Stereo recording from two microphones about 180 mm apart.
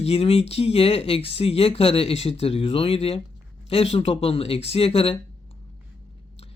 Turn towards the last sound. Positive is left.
turn(degrees=35)  # may be behind; listen again after turning